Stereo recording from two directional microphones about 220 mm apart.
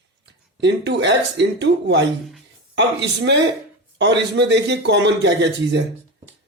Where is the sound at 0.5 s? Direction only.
50° right (ahead or behind).